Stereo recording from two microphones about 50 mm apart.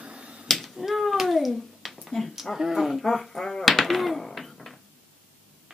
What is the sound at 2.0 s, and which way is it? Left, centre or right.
Speech, centre.